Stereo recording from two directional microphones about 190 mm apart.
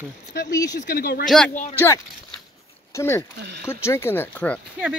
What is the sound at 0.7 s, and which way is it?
Speech, 55° left (ahead or behind).